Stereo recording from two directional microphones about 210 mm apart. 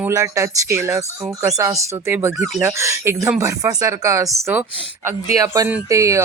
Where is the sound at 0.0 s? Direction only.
15° right (ahead or behind).